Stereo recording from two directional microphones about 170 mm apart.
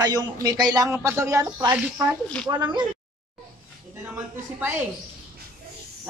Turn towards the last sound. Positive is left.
turn(degrees=-10)  # may be behind; listen again after turning